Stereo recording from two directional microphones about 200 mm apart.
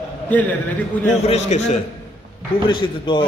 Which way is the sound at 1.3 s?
35° left (ahead or behind).